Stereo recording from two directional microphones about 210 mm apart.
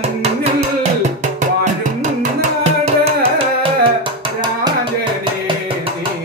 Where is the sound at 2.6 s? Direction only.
30° right (ahead or behind).